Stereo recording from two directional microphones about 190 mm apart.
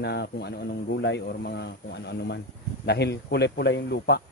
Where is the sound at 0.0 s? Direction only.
60° left (ahead or behind).